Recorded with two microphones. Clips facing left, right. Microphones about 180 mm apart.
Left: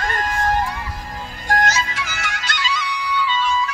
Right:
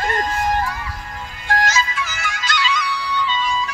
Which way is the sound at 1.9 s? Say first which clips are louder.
Right 1 dB; 70° left (ahead or behind).